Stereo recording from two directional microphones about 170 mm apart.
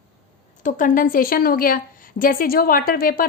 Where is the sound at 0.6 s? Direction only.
50° left (ahead or behind).